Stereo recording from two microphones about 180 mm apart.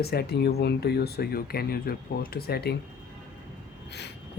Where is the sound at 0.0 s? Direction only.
60° left (ahead or behind).